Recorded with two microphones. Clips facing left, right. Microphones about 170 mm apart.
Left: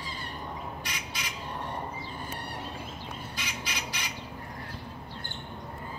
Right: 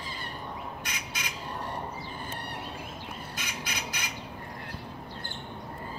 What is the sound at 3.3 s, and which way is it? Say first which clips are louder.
Squawk: even; 50° right (ahead or behind).